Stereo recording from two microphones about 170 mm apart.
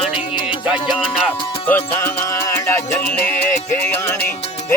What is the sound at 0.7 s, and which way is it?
Music, 5° right (ahead or behind).